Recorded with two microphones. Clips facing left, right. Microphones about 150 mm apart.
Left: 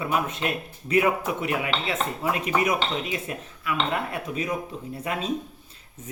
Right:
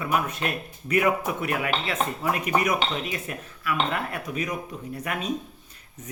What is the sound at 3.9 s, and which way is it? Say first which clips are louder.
Speech: left 1 dB; 25° left (ahead or behind).